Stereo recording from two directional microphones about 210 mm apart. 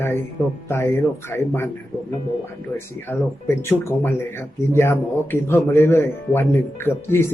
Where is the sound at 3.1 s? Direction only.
10° left (ahead or behind).